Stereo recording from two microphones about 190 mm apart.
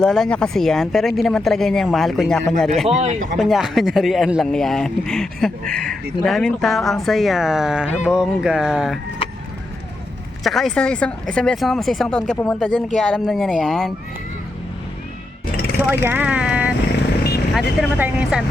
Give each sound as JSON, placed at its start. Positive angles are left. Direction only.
{"t": 0.0, "sound": "speech", "side_deg": 0}
{"t": 2.8, "sound": "speech", "side_deg": -35}
{"t": 3.3, "sound": "speech", "side_deg": 0}
{"t": 10.4, "sound": "speech", "side_deg": 0}
{"t": 15.9, "sound": "speech", "side_deg": -10}